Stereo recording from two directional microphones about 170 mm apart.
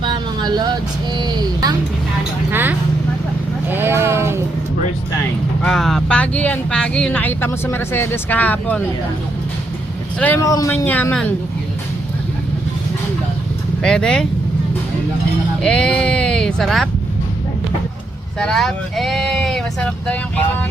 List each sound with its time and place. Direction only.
0.0 s vehicle: 25° right (ahead or behind)
2.5 s vehicle: 10° right (ahead or behind)
3.7 s a sound: 15° right (ahead or behind)
5.6 s a sound: centre (ahead or behind)
10.2 s speech: 10° left (ahead or behind)
13.8 s speech: 5° left (ahead or behind)
15.6 s speech: 5° left (ahead or behind)
18.3 s speech: 5° left (ahead or behind)